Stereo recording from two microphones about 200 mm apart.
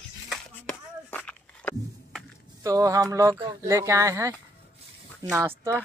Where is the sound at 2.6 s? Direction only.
15° right (ahead or behind).